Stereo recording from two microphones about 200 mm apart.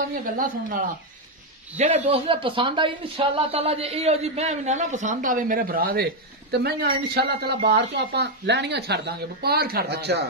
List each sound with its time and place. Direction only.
0.1 s speech: 45° right (ahead or behind)
1.8 s speech: 30° right (ahead or behind); by 10.2 s 55° right (ahead or behind)